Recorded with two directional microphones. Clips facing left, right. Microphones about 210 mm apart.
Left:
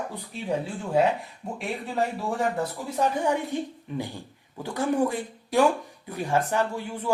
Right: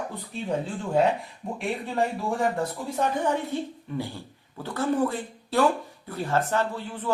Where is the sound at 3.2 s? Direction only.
15° left (ahead or behind).